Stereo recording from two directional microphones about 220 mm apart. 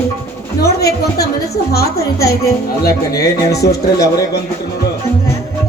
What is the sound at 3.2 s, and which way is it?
Speech, 45° left (ahead or behind).